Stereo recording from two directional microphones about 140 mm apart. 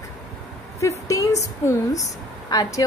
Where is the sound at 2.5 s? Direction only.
25° left (ahead or behind).